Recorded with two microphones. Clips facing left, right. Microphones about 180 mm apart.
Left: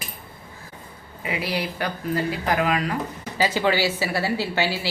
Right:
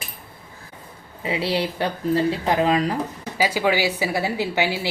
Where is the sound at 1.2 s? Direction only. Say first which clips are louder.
Right 4 dB; 30° right (ahead or behind).